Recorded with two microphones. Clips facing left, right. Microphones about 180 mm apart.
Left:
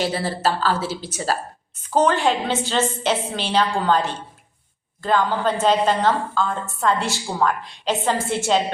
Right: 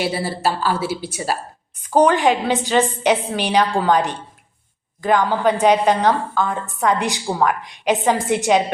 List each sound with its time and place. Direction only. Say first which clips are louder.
0.0 s a woman's voice: right 1 dB; 10° right (ahead or behind)